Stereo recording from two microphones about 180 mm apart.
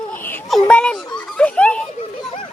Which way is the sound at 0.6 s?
5° left (ahead or behind).